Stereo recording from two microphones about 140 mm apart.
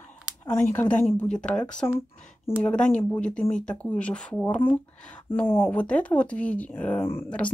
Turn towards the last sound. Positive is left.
turn(degrees=10)  # may be behind; listen again after turning